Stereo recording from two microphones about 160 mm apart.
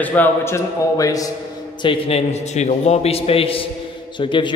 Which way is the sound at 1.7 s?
35° left (ahead or behind).